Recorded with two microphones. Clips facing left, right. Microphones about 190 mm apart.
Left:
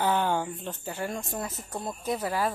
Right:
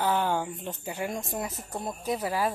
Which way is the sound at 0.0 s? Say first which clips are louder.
Left 1 dB; 5° right (ahead or behind).